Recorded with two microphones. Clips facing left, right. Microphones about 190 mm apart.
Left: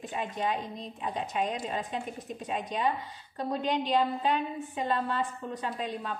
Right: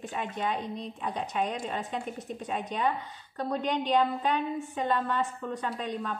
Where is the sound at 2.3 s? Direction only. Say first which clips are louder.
Even; 10° left (ahead or behind).